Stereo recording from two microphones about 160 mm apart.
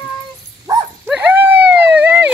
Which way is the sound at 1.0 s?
10° right (ahead or behind).